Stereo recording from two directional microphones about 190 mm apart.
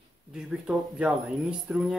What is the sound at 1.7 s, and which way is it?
Speech, 5° right (ahead or behind).